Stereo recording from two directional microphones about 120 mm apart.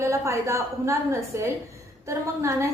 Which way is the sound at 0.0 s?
25° right (ahead or behind).